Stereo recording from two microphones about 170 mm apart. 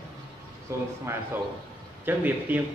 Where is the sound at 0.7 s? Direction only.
15° right (ahead or behind).